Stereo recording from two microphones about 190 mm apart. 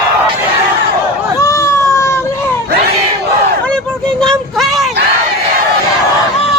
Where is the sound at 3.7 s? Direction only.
5° left (ahead or behind).